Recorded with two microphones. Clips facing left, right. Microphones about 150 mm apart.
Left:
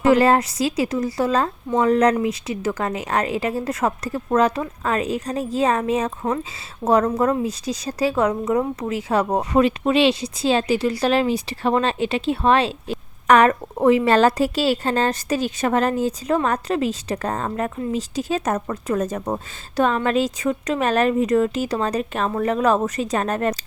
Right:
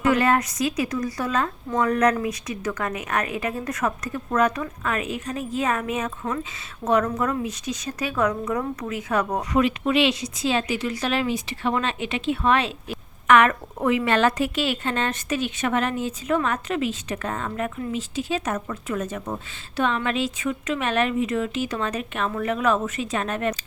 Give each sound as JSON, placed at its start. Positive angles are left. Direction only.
{"t": 0.0, "sound": "a woman's voice", "side_deg": 30}